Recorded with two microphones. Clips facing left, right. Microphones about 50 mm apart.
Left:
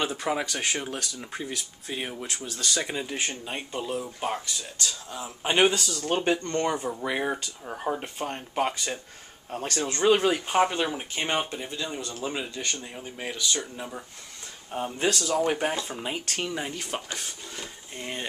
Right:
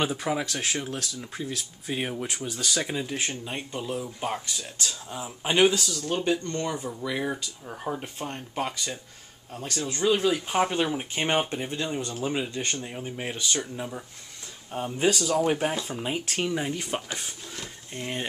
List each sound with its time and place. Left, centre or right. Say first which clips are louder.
0.0 s speech: right 1 dB; centre
1.9 s speech: right 4 dB; centre
2.2 s speech: right 3 dB; centre
2.6 s speech: even; centre
4.6 s speech: even; centre
5.4 s speech: right 1 dB; centre
6.0 s speech: left 2 dB; left
7.6 s speech: left 3 dB; centre
9.5 s speech: left 3 dB; left
10.3 s speech: left 1 dB; centre
11.1 s speech: right 3 dB; centre
13.7 s speech: right 2 dB; centre